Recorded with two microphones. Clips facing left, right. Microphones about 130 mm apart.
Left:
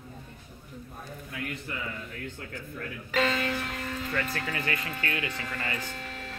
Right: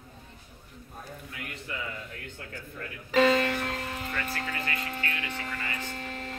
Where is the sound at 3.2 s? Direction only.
30° right (ahead or behind).